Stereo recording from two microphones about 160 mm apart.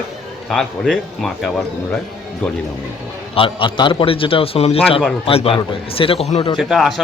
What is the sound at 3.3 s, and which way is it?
Speech, 30° left (ahead or behind).